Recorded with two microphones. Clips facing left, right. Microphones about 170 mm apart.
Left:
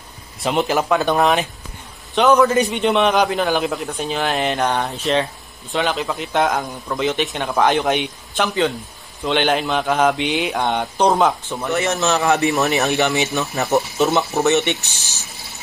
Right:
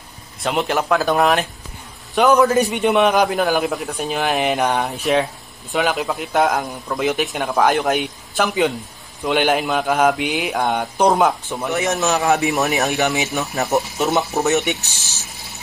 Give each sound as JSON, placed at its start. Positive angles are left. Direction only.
{"t": 0.4, "sound": "a man's voice", "side_deg": 0}
{"t": 8.5, "sound": "a man's voice", "side_deg": -15}